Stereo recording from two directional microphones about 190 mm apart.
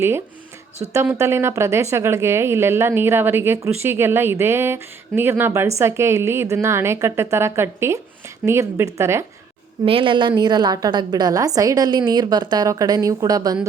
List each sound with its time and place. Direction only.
0.9 s a woman's voice: 15° right (ahead or behind)
9.8 s a woman's voice: 30° right (ahead or behind)